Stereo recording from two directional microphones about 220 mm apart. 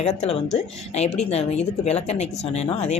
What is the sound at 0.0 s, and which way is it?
A woman's voice, 30° left (ahead or behind).